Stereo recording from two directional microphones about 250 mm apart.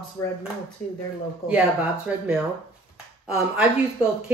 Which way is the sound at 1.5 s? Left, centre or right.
Centre.